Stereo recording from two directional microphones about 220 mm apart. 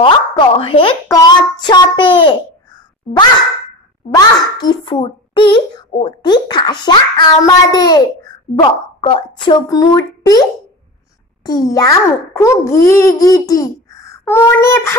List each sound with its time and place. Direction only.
0.0 s a child's voice: 25° left (ahead or behind)
11.4 s a child's voice: 15° left (ahead or behind)